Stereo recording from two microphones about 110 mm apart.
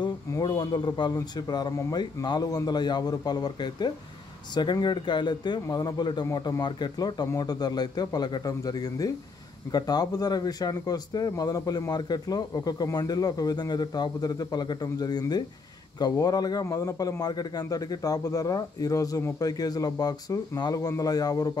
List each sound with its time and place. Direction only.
0.3 s a man's voice: 35° left (ahead or behind)